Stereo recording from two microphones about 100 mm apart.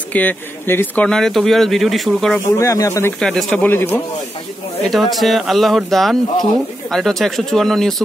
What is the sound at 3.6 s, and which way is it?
Speech, 20° left (ahead or behind).